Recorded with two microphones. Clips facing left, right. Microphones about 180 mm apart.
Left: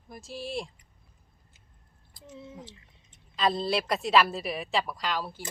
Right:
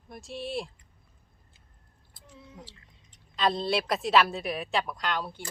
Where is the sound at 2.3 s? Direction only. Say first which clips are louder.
Left 5 dB; 20° left (ahead or behind).